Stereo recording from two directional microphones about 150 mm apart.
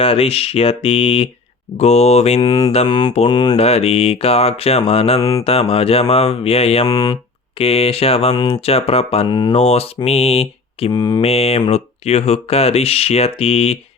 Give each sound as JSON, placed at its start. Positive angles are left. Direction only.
{"t": 0.0, "sound": "speech", "side_deg": 40}
{"t": 2.4, "sound": "speech", "side_deg": 25}
{"t": 3.5, "sound": "speech", "side_deg": 45}
{"t": 5.5, "sound": "mantra", "side_deg": 40}
{"t": 6.8, "sound": "speech", "side_deg": 25}
{"t": 7.6, "sound": "mantra", "side_deg": 40}
{"t": 9.2, "sound": "speech", "side_deg": 30}
{"t": 9.5, "sound": "speech", "side_deg": 45}
{"t": 10.9, "sound": "speech", "side_deg": 25}
{"t": 11.2, "sound": "speech", "side_deg": 45}